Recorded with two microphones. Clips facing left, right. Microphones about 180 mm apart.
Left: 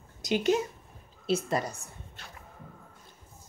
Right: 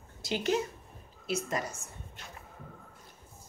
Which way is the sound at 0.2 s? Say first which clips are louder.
Left 4 dB; 20° left (ahead or behind).